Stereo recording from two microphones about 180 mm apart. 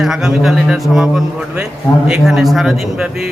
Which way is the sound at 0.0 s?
5° right (ahead or behind).